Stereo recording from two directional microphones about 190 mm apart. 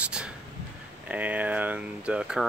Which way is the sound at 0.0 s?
5° right (ahead or behind).